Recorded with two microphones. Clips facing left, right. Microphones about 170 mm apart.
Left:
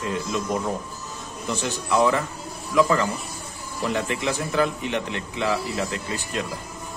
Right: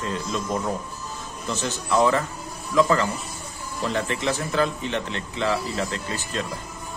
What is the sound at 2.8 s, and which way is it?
A man's voice, 10° left (ahead or behind).